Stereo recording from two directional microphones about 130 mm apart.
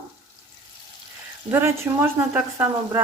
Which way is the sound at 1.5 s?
15° right (ahead or behind).